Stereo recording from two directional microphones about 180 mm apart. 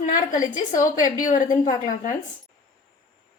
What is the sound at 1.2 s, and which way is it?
Speech, 45° left (ahead or behind).